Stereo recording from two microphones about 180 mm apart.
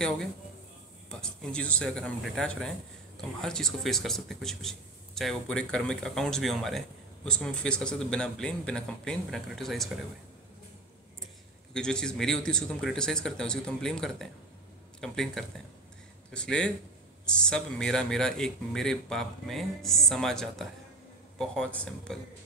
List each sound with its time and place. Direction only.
1.2 s speech: 5° left (ahead or behind)
11.7 s speech: 5° left (ahead or behind)